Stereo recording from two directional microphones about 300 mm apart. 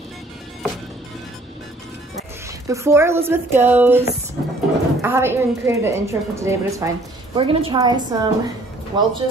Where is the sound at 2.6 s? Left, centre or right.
Centre.